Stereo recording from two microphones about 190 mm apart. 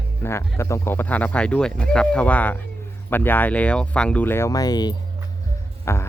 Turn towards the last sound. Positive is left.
turn(degrees=15)  # may be behind; listen again after turning